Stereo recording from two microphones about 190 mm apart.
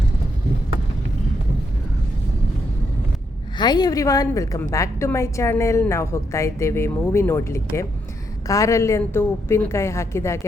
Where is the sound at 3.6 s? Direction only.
20° left (ahead or behind).